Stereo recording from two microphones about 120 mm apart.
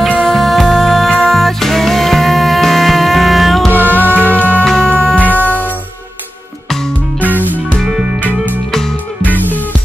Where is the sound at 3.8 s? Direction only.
15° right (ahead or behind).